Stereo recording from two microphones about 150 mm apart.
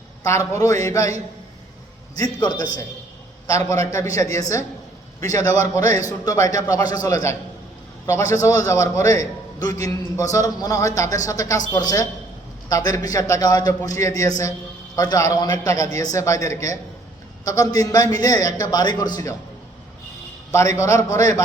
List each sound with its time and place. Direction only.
0.2 s a man's voice: 20° left (ahead or behind)
20.5 s a man's voice: 20° left (ahead or behind)